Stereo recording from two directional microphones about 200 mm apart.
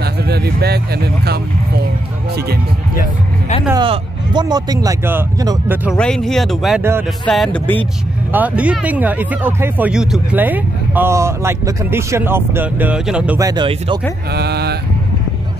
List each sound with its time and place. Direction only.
0.0 s speech: 55° right (ahead or behind)
3.0 s speech: 35° left (ahead or behind)
3.7 s speech: 25° right (ahead or behind)
5.9 s speech: 5° left (ahead or behind)
6.8 s speech: 10° right (ahead or behind)
7.2 s speech: centre (ahead or behind)
8.3 s speech: 5° right (ahead or behind)
13.4 s speech: 20° right (ahead or behind)
14.3 s speech: 55° right (ahead or behind)